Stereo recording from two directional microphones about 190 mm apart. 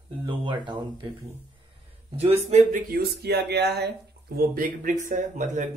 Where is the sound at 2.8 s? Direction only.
55° right (ahead or behind).